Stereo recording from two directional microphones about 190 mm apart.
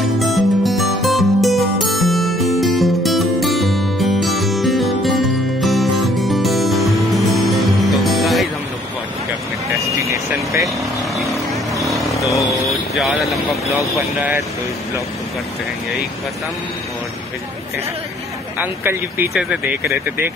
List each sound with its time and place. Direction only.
0.0 s music: centre (ahead or behind)
9.8 s vehicle: 15° right (ahead or behind)
11.8 s vehicle: centre (ahead or behind)
18.6 s speech: 10° right (ahead or behind)